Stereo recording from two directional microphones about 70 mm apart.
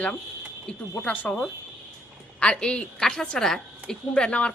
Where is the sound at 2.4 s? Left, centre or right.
Centre.